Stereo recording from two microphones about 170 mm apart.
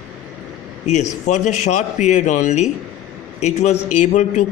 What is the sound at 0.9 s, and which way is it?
A man's voice, 45° left (ahead or behind).